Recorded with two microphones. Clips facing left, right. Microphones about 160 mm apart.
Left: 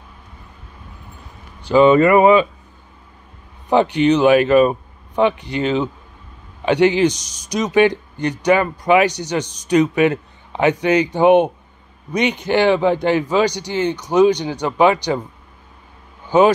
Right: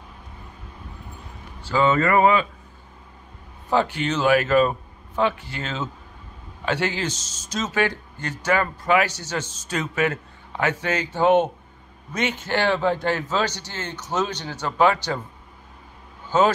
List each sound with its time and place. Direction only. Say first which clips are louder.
1.6 s a man's voice: left 9 dB; 20° left (ahead or behind)
3.7 s a man's voice: left 8 dB; 20° left (ahead or behind)
16.3 s speech: left 6 dB; 15° left (ahead or behind)